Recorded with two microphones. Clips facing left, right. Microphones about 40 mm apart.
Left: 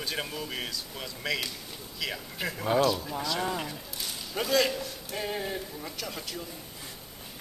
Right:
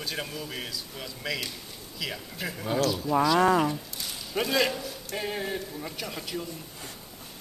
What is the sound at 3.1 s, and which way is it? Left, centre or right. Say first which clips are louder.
Speech: right 11 dB; right.